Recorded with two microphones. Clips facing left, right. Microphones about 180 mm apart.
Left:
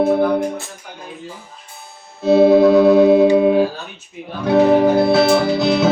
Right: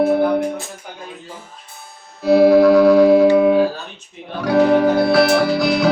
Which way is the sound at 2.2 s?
25° left (ahead or behind).